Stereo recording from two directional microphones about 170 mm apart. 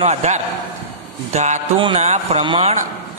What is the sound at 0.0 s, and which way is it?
A man's voice, 40° right (ahead or behind).